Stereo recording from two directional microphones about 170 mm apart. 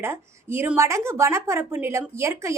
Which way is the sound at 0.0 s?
15° right (ahead or behind).